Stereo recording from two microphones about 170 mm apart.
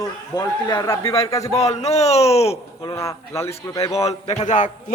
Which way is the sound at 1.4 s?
40° left (ahead or behind).